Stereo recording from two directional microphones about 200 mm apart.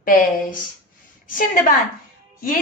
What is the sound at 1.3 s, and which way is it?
Speech, 45° left (ahead or behind).